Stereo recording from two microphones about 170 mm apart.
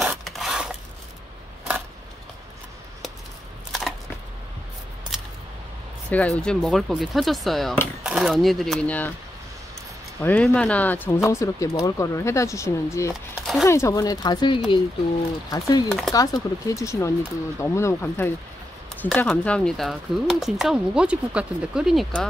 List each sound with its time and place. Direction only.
0.0 s zipper: centre (ahead or behind)
6.0 s speech: 10° left (ahead or behind)
10.2 s speech: 10° left (ahead or behind)
13.1 s a sound: centre (ahead or behind)
13.7 s speech: 15° left (ahead or behind); by 22.2 s centre (ahead or behind)